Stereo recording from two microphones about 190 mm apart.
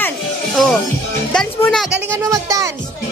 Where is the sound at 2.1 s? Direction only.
15° right (ahead or behind).